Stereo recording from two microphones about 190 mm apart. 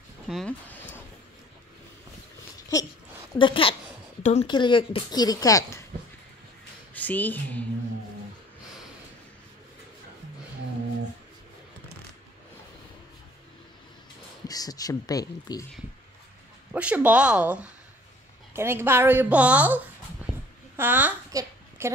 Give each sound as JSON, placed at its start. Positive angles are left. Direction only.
{"t": 0.3, "sound": "speech", "side_deg": 0}
{"t": 3.3, "sound": "speech", "side_deg": 25}
{"t": 4.5, "sound": "speech", "side_deg": 25}
{"t": 6.9, "sound": "a woman's voice", "side_deg": 10}
{"t": 14.5, "sound": "speech", "side_deg": 20}
{"t": 16.7, "sound": "a woman's voice", "side_deg": -10}
{"t": 20.2, "sound": "a sound", "side_deg": -10}